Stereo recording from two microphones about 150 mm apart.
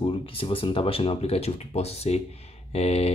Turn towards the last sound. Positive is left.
turn(degrees=45)  # may be behind; listen again after turning